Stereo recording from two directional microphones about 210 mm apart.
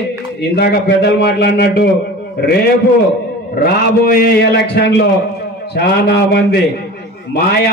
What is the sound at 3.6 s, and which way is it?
A man's voice, 45° left (ahead or behind).